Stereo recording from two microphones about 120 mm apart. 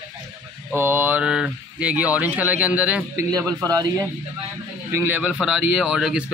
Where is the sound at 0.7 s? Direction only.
20° right (ahead or behind).